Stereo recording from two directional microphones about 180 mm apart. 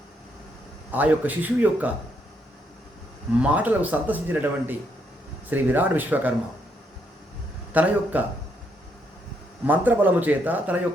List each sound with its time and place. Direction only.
0.9 s speech: 10° right (ahead or behind)
3.4 s speech: 10° right (ahead or behind)
7.7 s speech: 10° right (ahead or behind)
9.6 s speech: 10° right (ahead or behind)